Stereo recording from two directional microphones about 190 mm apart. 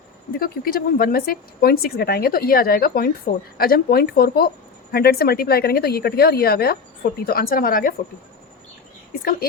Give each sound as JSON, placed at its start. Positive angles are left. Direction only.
{"t": 0.3, "sound": "speech", "side_deg": 50}